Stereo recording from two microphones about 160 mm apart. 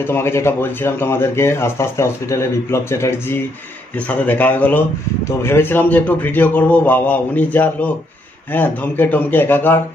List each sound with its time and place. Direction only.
0.0 s speech: 15° left (ahead or behind)